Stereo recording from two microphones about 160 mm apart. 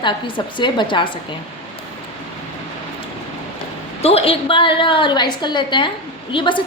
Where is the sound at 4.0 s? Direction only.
40° left (ahead or behind).